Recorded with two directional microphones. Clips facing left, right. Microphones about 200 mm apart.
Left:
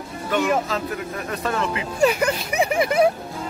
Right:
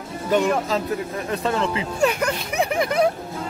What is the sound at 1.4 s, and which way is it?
Speech, 25° right (ahead or behind).